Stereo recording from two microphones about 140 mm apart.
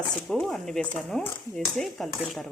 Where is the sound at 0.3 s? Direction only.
Centre (ahead or behind).